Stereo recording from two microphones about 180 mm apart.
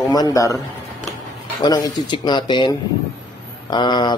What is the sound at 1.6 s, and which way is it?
A man's voice, 20° left (ahead or behind).